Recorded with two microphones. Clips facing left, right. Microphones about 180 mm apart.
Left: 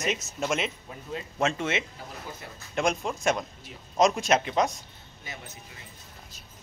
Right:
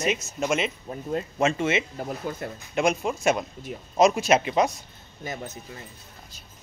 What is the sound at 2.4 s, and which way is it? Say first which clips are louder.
Speech: right 10 dB; 55° right (ahead or behind).